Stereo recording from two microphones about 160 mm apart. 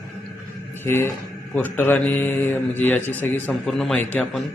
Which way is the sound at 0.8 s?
15° left (ahead or behind).